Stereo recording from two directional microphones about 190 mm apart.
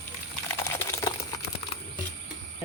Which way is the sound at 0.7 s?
15° left (ahead or behind).